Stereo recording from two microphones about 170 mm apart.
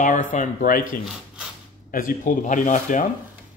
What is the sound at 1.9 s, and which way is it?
Speech, 55° left (ahead or behind).